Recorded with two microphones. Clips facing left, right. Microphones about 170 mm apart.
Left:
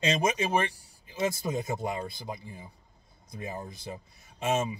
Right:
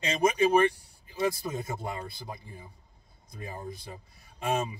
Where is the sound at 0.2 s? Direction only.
20° left (ahead or behind).